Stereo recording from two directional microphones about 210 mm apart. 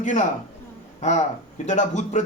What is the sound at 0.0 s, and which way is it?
Speech, 35° left (ahead or behind).